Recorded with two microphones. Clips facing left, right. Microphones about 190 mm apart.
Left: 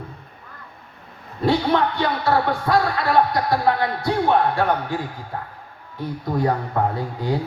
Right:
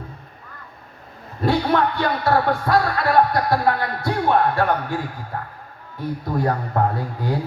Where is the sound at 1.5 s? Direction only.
50° right (ahead or behind).